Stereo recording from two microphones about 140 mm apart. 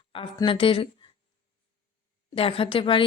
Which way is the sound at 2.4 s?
40° left (ahead or behind).